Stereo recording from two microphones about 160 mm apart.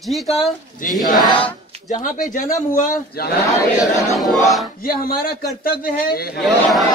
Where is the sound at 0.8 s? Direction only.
55° left (ahead or behind).